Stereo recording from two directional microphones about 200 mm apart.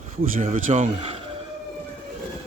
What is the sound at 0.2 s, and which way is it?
Speech, 40° right (ahead or behind).